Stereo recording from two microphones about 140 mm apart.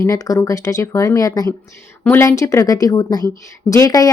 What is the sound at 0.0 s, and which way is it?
A woman's voice, 25° left (ahead or behind).